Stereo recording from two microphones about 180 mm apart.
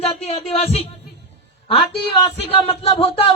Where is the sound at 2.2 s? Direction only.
30° left (ahead or behind).